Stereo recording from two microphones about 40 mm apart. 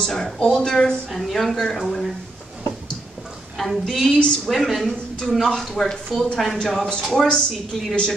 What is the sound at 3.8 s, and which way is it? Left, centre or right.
Speech, centre.